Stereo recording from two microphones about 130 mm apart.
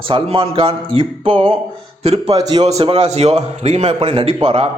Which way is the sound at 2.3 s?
30° right (ahead or behind).